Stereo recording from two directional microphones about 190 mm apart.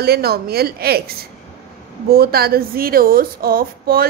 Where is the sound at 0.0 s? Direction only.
55° right (ahead or behind).